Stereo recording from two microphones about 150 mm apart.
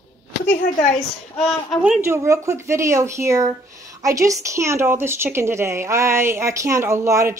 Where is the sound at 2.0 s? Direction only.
20° right (ahead or behind).